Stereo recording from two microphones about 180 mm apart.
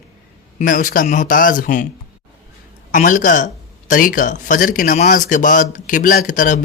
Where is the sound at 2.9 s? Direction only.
45° left (ahead or behind).